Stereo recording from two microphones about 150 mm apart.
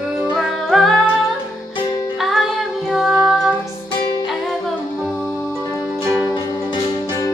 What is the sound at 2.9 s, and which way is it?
Music, centre (ahead or behind).